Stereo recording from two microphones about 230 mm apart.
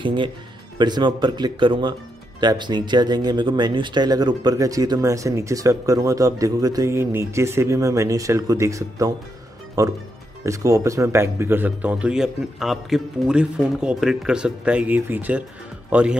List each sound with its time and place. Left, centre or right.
0.0 s speech: right; by 16.2 s centre